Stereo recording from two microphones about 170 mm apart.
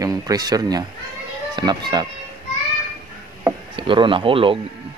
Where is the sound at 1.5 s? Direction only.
25° right (ahead or behind).